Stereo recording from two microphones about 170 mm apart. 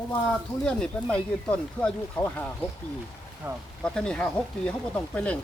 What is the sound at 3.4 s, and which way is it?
Speech, 15° right (ahead or behind).